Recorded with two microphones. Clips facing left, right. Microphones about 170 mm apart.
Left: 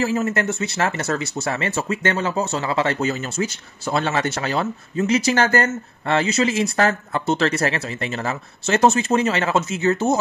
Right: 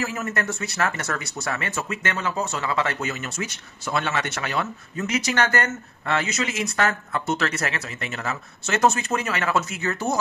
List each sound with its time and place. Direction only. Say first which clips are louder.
0.0 s speech: left 7 dB; 25° left (ahead or behind)